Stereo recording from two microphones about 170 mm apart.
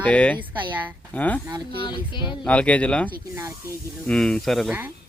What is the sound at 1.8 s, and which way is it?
Speech, 25° left (ahead or behind).